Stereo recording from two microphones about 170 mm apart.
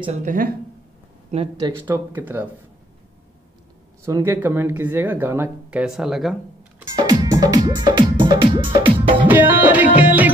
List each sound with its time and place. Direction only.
0.0 s speech: 45° right (ahead or behind)
1.6 s speech: 15° right (ahead or behind)
4.0 s speech: 15° right (ahead or behind)
7.0 s music: 20° right (ahead or behind)
9.3 s speech: 10° right (ahead or behind)
9.9 s music: 10° right (ahead or behind)